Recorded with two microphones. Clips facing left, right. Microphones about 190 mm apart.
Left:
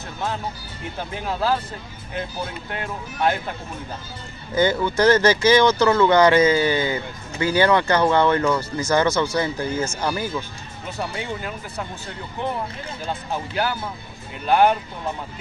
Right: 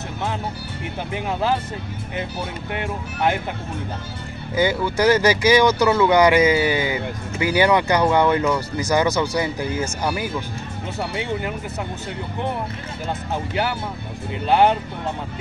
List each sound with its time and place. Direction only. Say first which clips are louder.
1.1 s speech: right 1 dB; 20° right (ahead or behind)
2.7 s speech: right 3 dB; 15° right (ahead or behind)
4.6 s speech: left 1 dB; 10° right (ahead or behind)
13.3 s speech: right 1 dB; 20° right (ahead or behind)